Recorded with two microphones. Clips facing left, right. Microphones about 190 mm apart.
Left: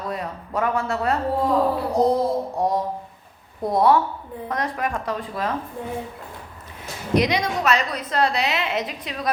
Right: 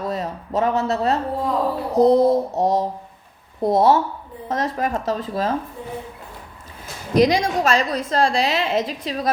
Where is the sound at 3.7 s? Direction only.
25° right (ahead or behind).